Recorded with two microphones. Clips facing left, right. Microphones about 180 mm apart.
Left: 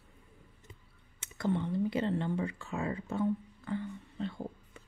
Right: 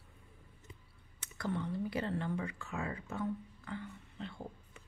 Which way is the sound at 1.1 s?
25° left (ahead or behind).